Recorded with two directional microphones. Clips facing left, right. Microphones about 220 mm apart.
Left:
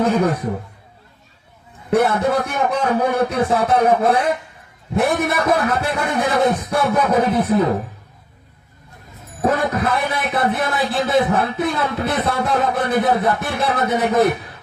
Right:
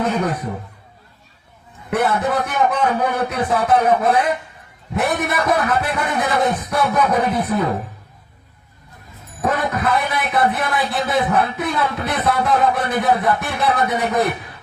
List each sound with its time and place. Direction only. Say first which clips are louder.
0.0 s speech: left 3 dB; 25° left (ahead or behind)
1.9 s speech: left 3 dB; 25° left (ahead or behind)
9.4 s speech: left 2 dB; 25° left (ahead or behind)